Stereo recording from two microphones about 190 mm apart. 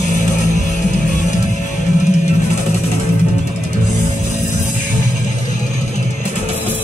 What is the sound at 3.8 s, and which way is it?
Music, 40° left (ahead or behind).